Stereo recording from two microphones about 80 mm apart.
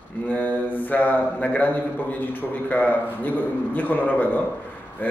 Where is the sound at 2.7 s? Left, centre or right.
Left.